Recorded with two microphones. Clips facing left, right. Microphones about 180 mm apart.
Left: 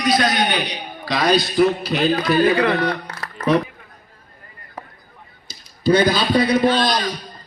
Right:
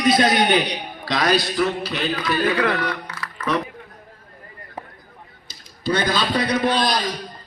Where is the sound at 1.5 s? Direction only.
40° left (ahead or behind).